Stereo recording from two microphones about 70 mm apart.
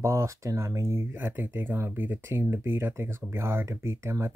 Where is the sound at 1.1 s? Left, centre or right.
Right.